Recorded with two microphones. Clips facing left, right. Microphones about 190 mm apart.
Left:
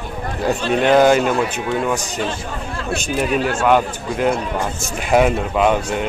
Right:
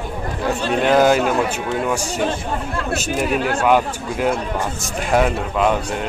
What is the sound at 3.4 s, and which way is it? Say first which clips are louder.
Speech: left 1 dB; 60° right (ahead or behind).